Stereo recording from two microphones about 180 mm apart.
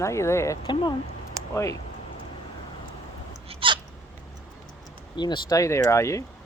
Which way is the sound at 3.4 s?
25° right (ahead or behind).